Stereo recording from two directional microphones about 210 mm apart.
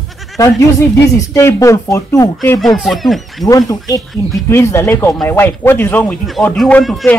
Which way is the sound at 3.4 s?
15° left (ahead or behind).